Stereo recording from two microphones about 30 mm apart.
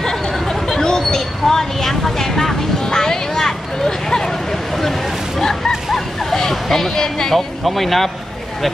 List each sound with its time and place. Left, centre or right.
0.0 s chatter: centre
0.7 s vehicle: left
5.9 s a sound: centre
7.3 s speech: centre